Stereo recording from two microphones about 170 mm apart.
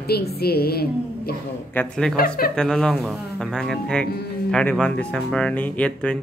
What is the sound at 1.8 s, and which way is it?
Speech, 5° left (ahead or behind).